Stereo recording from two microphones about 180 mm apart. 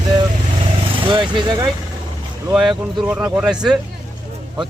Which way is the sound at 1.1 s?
25° right (ahead or behind).